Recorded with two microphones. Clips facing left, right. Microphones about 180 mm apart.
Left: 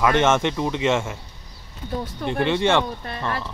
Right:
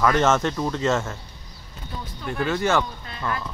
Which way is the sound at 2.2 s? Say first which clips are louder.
Left 3 dB; 25° left (ahead or behind).